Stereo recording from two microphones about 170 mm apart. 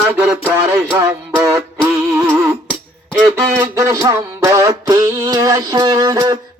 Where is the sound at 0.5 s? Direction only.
15° right (ahead or behind).